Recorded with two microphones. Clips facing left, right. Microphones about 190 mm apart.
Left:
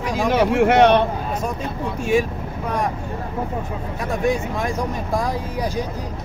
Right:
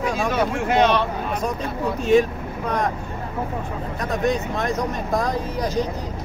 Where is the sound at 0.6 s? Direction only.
70° left (ahead or behind).